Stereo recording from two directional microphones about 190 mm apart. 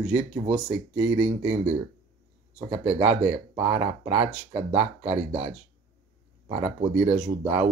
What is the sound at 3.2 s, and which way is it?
Speech, 30° right (ahead or behind).